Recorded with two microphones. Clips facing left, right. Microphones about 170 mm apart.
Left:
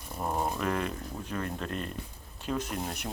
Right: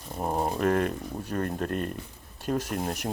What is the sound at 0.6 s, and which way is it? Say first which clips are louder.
Speech: right 6 dB; 50° right (ahead or behind).